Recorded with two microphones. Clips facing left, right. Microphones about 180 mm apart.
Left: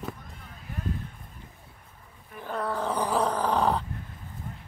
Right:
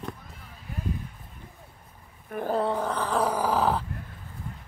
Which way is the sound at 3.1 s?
5° right (ahead or behind).